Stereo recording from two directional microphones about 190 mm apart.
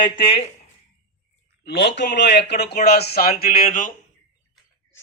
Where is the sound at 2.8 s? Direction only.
55° left (ahead or behind).